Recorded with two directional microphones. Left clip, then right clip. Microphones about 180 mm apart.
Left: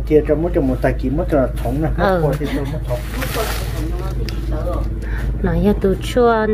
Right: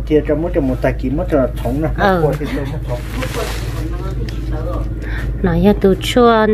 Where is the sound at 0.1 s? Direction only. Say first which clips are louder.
Even; 10° right (ahead or behind).